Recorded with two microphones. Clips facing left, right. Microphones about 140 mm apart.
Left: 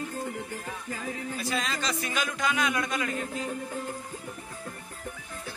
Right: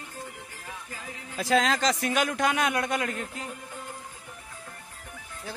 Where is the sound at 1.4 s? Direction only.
90° right; by 3.1 s 60° right (ahead or behind).